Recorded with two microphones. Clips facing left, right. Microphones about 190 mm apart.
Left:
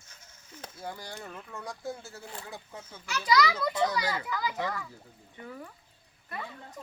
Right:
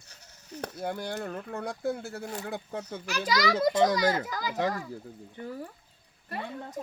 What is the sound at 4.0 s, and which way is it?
Speech, 45° right (ahead or behind).